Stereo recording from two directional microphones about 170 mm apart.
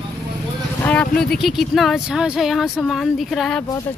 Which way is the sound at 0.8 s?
5° left (ahead or behind).